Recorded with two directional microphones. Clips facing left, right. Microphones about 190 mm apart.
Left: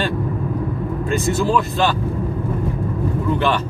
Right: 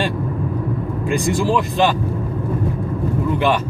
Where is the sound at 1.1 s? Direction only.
15° right (ahead or behind).